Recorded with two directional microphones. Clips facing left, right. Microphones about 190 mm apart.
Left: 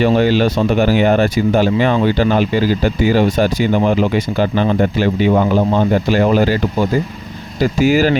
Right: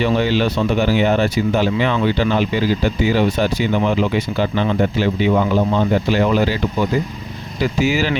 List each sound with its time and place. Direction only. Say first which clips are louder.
0.0 s speech: left 4 dB; 45° left (ahead or behind)